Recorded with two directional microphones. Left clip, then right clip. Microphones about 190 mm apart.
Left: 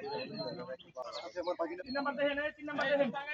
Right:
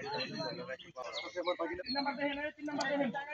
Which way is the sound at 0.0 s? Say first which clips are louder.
Right 1 dB; 30° left (ahead or behind).